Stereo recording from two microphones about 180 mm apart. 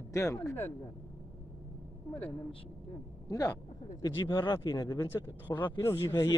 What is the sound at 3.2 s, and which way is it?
Speech, 20° left (ahead or behind).